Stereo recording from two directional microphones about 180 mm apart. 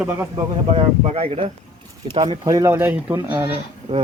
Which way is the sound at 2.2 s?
20° right (ahead or behind).